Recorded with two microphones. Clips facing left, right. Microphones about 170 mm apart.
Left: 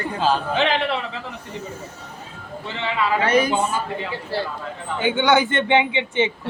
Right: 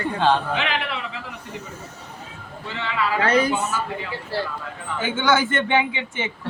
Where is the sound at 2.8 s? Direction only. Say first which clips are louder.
Left 1 dB; 20° left (ahead or behind).